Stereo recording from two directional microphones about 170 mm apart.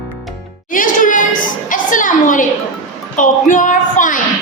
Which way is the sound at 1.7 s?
50° left (ahead or behind).